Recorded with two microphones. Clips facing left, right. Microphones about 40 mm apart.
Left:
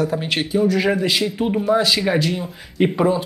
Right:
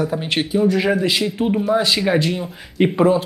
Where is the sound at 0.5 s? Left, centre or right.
Centre.